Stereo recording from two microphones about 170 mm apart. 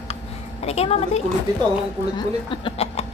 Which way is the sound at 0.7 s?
35° left (ahead or behind).